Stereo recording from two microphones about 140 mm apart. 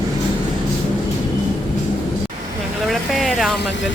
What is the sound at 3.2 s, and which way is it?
Vehicle, centre (ahead or behind).